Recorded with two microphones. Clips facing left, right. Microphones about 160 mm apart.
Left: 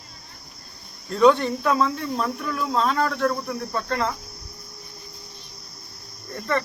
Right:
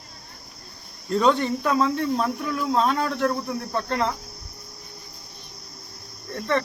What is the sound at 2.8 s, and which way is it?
Cricket, 20° right (ahead or behind).